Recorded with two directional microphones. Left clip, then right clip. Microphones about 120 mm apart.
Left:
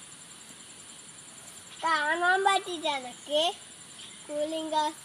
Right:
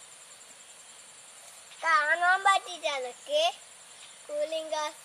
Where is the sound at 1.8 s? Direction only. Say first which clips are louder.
Right 2 dB; 15° right (ahead or behind).